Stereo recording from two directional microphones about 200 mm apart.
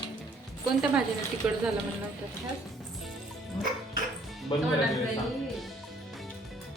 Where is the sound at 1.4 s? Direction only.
5° right (ahead or behind).